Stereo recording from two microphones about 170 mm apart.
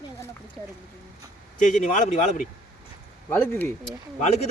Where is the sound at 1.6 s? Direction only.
50° left (ahead or behind).